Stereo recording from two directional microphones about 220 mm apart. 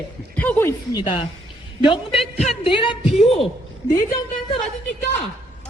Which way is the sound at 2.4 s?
25° left (ahead or behind).